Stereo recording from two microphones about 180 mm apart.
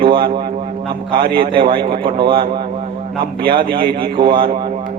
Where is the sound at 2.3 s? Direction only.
55° right (ahead or behind).